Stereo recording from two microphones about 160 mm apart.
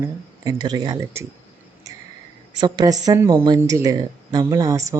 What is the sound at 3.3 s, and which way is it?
Speech, 30° right (ahead or behind).